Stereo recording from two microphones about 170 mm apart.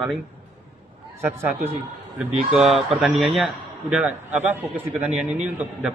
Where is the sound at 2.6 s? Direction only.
Centre (ahead or behind).